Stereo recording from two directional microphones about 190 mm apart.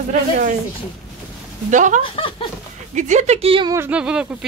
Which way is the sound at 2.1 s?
25° left (ahead or behind).